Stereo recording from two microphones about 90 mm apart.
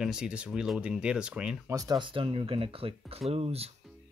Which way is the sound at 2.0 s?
80° right.